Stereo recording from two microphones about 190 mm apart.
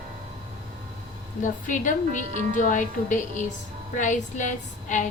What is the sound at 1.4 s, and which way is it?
A woman's voice, 45° left (ahead or behind).